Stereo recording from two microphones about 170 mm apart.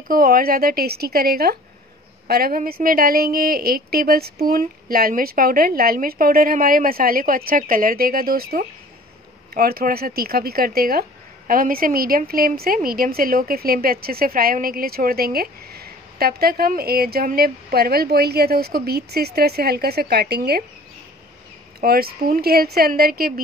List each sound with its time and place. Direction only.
0.1 s speech: 55° right (ahead or behind)
21.8 s speech: 60° right (ahead or behind)